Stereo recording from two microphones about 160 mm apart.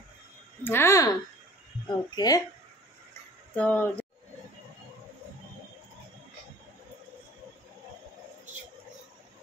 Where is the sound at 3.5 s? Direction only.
10° left (ahead or behind).